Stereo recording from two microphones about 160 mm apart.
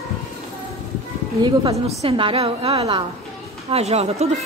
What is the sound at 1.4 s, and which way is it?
A woman's voice, 35° right (ahead or behind).